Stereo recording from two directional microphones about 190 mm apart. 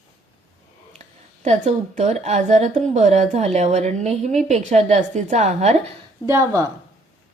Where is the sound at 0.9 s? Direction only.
35° right (ahead or behind).